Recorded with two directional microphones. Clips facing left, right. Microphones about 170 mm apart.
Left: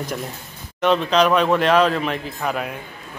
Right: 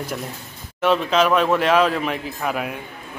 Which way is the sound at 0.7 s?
5° right (ahead or behind).